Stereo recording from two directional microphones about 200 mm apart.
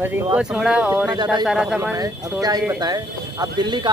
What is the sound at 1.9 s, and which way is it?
Speech, 20° right (ahead or behind).